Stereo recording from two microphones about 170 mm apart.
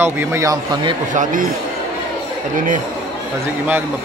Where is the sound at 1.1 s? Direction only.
50° right (ahead or behind).